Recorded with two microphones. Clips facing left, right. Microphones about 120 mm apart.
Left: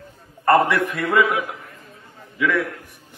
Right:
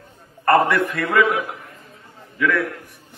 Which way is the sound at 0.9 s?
20° left (ahead or behind).